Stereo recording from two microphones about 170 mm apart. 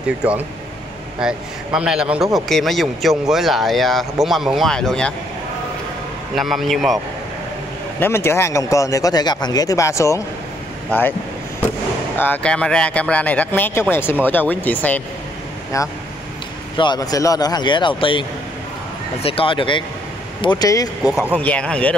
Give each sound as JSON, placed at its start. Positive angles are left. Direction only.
{"t": 1.2, "sound": "speech", "side_deg": -5}
{"t": 6.3, "sound": "speech", "side_deg": 0}
{"t": 8.0, "sound": "speech", "side_deg": 15}
{"t": 12.2, "sound": "speech", "side_deg": 10}
{"t": 16.7, "sound": "speech", "side_deg": 25}
{"t": 19.2, "sound": "speech", "side_deg": 30}
{"t": 21.0, "sound": "speech", "side_deg": -5}